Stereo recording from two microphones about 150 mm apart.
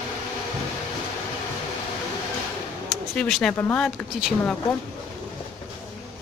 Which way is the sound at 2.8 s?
5° left (ahead or behind).